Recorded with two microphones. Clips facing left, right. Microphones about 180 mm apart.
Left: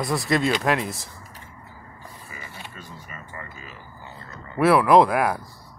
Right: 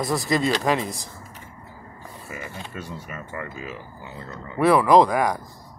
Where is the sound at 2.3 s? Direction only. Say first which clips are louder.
Right 8 dB; 75° right (ahead or behind).